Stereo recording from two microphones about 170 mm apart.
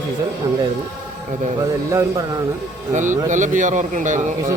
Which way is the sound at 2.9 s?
45° right (ahead or behind).